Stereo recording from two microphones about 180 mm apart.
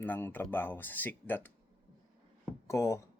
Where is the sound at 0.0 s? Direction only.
10° left (ahead or behind).